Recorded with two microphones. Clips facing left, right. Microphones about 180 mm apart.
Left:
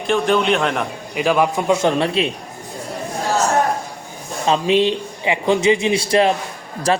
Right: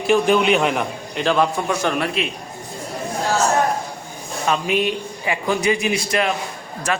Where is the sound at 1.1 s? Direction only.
10° left (ahead or behind); by 2.3 s 25° left (ahead or behind).